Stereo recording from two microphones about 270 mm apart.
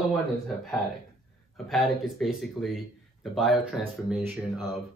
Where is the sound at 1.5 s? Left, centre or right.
Centre.